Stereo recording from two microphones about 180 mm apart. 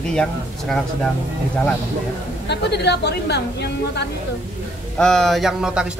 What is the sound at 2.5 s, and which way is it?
A woman's voice, 70° left (ahead or behind).